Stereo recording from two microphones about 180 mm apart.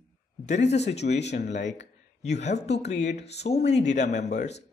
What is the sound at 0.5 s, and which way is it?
A man's voice, 40° left (ahead or behind).